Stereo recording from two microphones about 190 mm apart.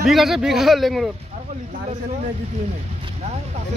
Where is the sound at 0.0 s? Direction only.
Centre (ahead or behind).